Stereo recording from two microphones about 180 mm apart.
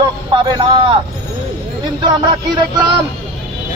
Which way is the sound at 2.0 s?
25° right (ahead or behind).